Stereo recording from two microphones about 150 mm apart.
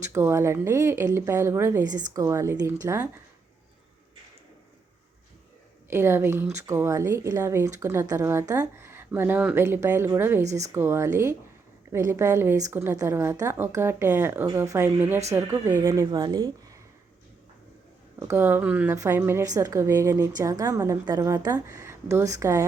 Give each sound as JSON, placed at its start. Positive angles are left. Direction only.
{"t": 0.1, "sound": "speech", "side_deg": -15}
{"t": 5.9, "sound": "speech", "side_deg": -15}
{"t": 18.2, "sound": "speech", "side_deg": -15}